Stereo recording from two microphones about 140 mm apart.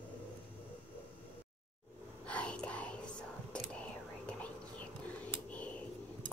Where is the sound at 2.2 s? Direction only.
10° left (ahead or behind).